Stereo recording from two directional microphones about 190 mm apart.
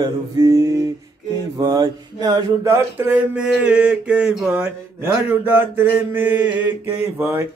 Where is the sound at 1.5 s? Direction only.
20° right (ahead or behind).